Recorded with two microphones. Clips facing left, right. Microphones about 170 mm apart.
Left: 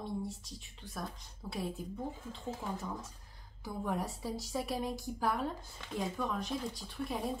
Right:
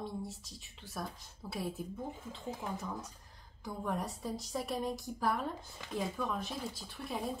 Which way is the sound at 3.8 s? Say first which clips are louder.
Left 1 dB; centre (ahead or behind).